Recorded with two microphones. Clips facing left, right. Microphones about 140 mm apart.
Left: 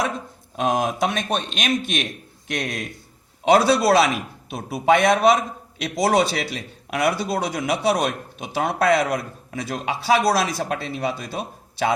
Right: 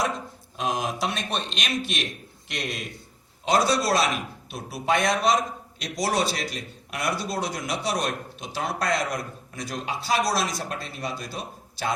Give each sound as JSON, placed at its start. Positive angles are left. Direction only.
{"t": 0.5, "sound": "a man's voice", "side_deg": 55}